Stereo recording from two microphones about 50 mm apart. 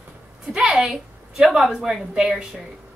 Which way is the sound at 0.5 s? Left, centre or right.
Centre.